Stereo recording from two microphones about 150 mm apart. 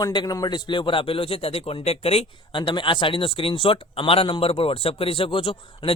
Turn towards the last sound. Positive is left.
turn(degrees=35)  # may be behind; listen again after turning